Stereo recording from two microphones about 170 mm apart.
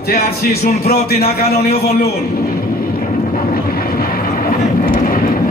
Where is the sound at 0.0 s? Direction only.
65° left (ahead or behind).